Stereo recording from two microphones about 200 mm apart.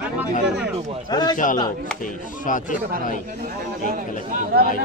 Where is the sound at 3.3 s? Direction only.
45° right (ahead or behind).